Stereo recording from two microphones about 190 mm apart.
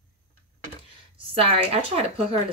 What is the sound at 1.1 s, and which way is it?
A woman's voice, 30° right (ahead or behind).